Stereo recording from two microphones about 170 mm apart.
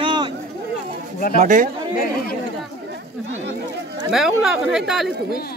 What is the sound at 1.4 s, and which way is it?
Speech, 50° right (ahead or behind).